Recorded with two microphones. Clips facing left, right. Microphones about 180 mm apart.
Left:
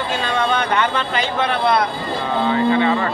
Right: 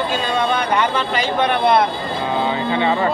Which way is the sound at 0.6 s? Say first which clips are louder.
Right 1 dB; 10° right (ahead or behind).